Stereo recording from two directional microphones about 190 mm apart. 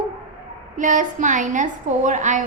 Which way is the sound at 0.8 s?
40° right (ahead or behind).